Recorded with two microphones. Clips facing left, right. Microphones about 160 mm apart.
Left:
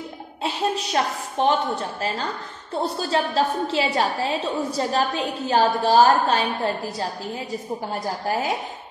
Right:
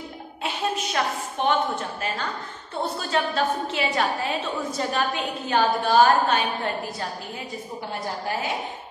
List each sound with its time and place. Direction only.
1.0 s a woman's voice: 30° left (ahead or behind)
2.8 s a woman's voice: 35° left (ahead or behind)